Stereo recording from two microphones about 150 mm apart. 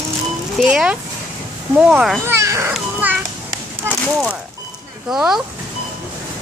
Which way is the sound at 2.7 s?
10° right (ahead or behind).